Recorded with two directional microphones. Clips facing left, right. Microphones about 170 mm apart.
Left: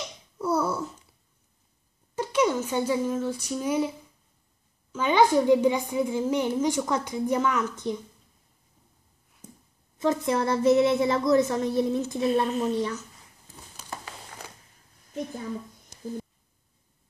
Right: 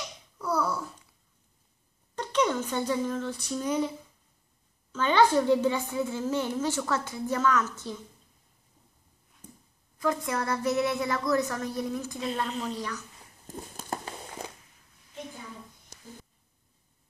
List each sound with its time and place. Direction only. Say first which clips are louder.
0.4 s babbling: left 3 dB; 25° left (ahead or behind)
2.1 s speech: left 3 dB; 10° left (ahead or behind)
4.9 s a child's voice: left 2 dB; 10° left (ahead or behind)
9.9 s a woman's voice: left 4 dB; 25° left (ahead or behind)
13.5 s a sound: right 6 dB; 50° right (ahead or behind)